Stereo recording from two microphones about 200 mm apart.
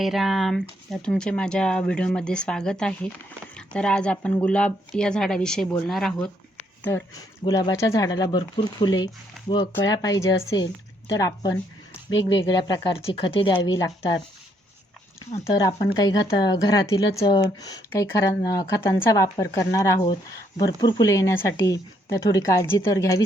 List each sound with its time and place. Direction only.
0.0 s speech: centre (ahead or behind)
6.8 s speech: 15° left (ahead or behind)
12.6 s speech: 20° left (ahead or behind)
15.5 s speech: 20° left (ahead or behind)